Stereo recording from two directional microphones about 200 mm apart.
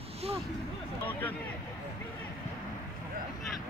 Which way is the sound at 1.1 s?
10° left (ahead or behind).